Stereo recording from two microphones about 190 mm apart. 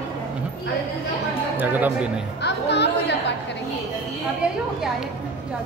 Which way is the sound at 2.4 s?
65° left (ahead or behind).